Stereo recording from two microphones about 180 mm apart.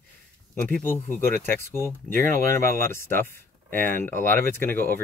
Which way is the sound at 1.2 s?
15° left (ahead or behind).